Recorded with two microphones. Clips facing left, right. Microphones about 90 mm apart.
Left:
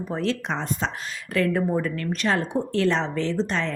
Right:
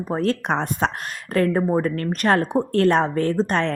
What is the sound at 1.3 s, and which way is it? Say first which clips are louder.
A woman's voice: right 3 dB; 35° right (ahead or behind).